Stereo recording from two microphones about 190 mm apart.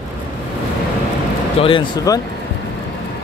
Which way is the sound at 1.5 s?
30° left (ahead or behind).